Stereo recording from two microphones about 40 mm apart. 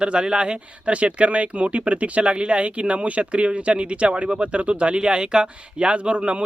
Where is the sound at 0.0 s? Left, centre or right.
Right.